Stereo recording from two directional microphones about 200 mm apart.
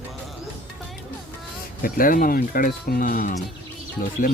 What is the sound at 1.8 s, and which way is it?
Speech, 45° left (ahead or behind).